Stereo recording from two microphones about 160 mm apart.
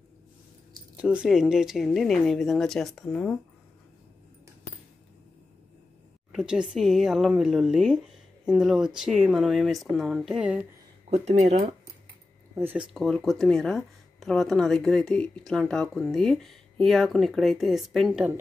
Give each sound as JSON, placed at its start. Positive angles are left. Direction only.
{"t": 0.9, "sound": "speech", "side_deg": -5}
{"t": 6.3, "sound": "speech", "side_deg": -5}
{"t": 11.1, "sound": "speech", "side_deg": -45}
{"t": 12.5, "sound": "speech", "side_deg": -15}
{"t": 12.9, "sound": "speech", "side_deg": 0}